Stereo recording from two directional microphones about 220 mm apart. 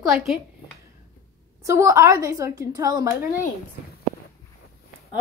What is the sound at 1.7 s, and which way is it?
A woman's voice, 15° right (ahead or behind).